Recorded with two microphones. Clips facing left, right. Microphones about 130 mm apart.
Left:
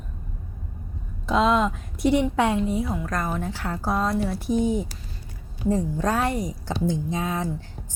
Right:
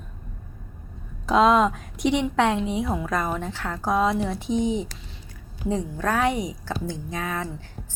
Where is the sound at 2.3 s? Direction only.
10° left (ahead or behind).